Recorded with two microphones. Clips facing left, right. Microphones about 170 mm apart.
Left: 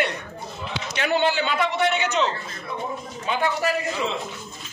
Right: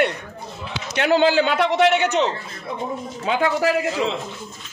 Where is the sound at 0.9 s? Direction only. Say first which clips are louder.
Right 6 dB; 80° right; by 2.2 s 65° right (ahead or behind).